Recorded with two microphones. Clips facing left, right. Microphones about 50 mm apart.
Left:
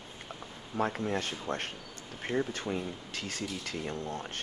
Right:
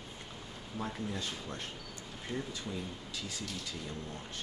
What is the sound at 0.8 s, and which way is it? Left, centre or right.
Speech, left.